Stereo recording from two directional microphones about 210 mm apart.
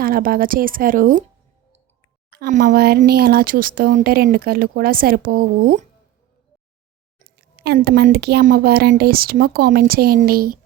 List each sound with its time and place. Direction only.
0.0 s a woman's voice: 45° right (ahead or behind)
2.5 s a woman's voice: 40° right (ahead or behind)
7.6 s a woman's voice: 50° right (ahead or behind)